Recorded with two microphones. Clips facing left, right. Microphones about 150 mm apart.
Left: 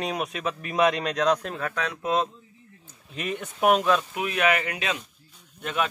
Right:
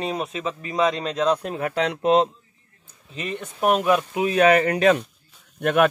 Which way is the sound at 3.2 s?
Centre (ahead or behind).